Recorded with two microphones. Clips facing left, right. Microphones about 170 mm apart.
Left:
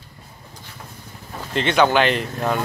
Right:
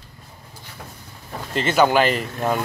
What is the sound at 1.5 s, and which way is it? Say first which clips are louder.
Speech: even; 5° right (ahead or behind).